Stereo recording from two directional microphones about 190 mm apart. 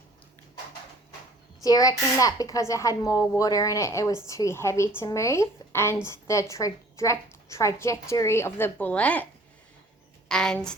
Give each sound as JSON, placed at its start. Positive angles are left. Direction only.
{"t": 1.6, "sound": "a woman's voice", "side_deg": 20}
{"t": 10.2, "sound": "a woman's voice", "side_deg": 5}